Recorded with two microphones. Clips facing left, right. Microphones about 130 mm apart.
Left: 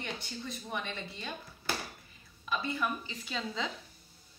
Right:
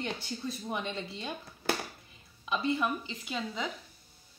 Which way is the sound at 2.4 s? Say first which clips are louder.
Right 4 dB; 20° right (ahead or behind).